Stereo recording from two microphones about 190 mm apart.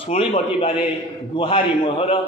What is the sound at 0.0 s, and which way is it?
A man's voice, 30° left (ahead or behind).